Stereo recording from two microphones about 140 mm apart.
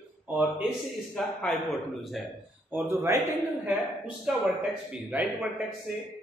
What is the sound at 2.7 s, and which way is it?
Speech, 15° right (ahead or behind).